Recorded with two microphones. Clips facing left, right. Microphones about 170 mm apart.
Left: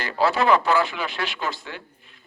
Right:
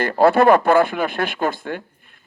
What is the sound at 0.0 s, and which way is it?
A man's voice, 55° right (ahead or behind).